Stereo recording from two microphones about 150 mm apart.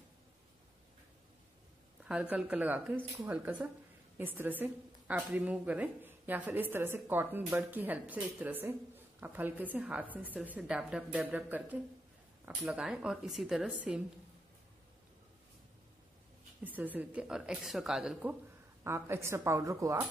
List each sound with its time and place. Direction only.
2.0 s a woman's voice: 10° right (ahead or behind)
16.6 s a woman's voice: 10° right (ahead or behind)
18.9 s a woman's voice: 15° right (ahead or behind)